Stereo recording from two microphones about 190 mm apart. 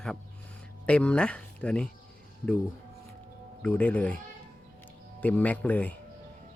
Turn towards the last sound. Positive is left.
turn(degrees=10)  # may be behind; listen again after turning